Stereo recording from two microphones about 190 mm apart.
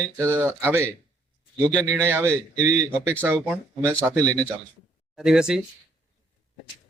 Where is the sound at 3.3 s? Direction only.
5° left (ahead or behind).